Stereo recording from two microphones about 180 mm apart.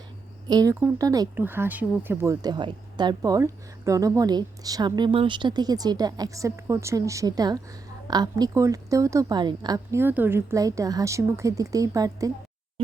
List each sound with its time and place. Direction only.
0.4 s a woman's voice: 20° right (ahead or behind)